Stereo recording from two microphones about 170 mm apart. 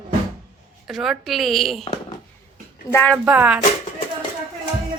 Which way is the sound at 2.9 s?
10° left (ahead or behind).